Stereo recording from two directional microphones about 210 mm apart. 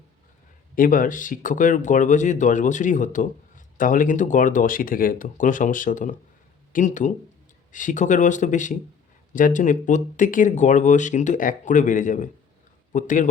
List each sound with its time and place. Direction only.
0.8 s speech: 40° left (ahead or behind)